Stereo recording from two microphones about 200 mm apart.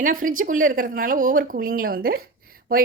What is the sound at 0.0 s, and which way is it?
A woman's voice, 40° right (ahead or behind).